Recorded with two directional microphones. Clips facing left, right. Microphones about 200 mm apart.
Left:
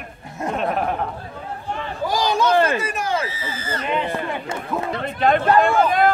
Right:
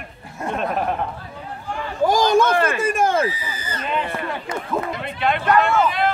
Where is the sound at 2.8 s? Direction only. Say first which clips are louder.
Right 5 dB; 50° right (ahead or behind).